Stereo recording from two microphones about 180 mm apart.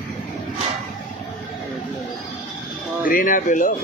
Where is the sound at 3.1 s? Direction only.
50° left (ahead or behind).